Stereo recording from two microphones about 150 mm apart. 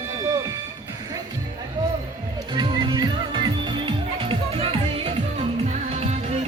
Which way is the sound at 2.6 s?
30° right (ahead or behind).